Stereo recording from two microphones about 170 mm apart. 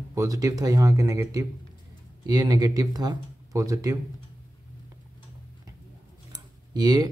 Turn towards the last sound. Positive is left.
turn(degrees=-25)  # may be behind; listen again after turning